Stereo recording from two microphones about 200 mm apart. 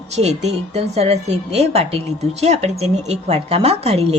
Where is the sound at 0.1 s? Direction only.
35° right (ahead or behind).